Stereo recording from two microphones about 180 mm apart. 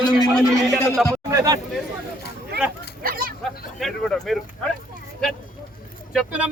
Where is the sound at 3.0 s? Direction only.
55° right (ahead or behind).